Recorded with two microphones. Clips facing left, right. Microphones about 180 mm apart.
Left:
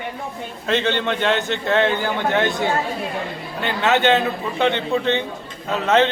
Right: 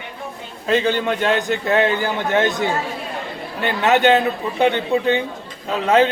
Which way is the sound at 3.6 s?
15° right (ahead or behind).